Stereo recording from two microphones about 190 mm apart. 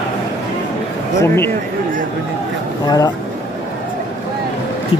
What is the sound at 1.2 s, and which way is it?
Speech, 15° left (ahead or behind).